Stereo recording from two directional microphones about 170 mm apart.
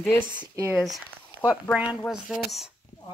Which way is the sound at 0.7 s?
Centre (ahead or behind).